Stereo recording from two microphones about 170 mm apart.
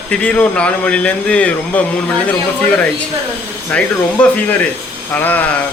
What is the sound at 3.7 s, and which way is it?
A man's voice, 5° left (ahead or behind).